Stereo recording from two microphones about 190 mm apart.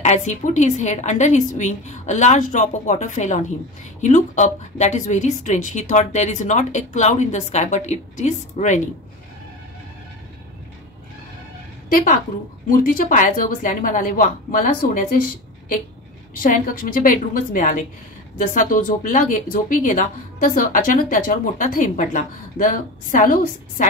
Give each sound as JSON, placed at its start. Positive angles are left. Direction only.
{"t": 0.0, "sound": "a woman's voice", "side_deg": 40}
{"t": 11.9, "sound": "speech", "side_deg": 45}
{"t": 16.3, "sound": "speech", "side_deg": 45}